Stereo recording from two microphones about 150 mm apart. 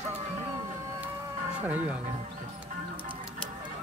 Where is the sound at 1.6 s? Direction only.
10° right (ahead or behind).